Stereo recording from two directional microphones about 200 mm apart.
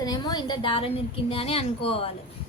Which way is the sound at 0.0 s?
20° left (ahead or behind).